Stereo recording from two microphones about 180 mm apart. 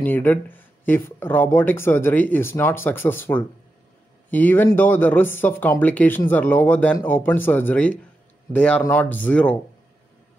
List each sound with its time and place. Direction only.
0.0 s speech: 10° left (ahead or behind)